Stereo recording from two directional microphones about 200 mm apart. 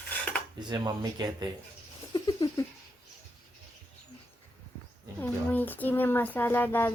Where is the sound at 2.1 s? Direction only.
20° left (ahead or behind).